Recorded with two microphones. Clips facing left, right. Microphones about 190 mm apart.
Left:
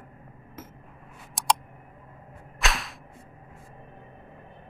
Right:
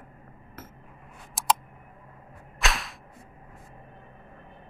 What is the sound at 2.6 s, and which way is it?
Whip, centre (ahead or behind).